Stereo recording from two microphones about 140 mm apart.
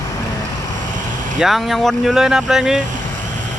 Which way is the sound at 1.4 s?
Centre (ahead or behind).